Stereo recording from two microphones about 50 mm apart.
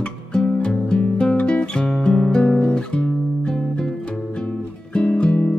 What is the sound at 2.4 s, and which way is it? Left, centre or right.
Guitar, left.